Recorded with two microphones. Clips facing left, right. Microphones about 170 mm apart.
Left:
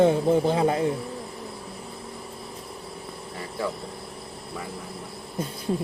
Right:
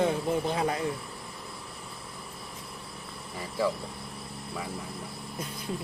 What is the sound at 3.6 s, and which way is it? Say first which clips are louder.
Speech: right 2 dB; centre (ahead or behind).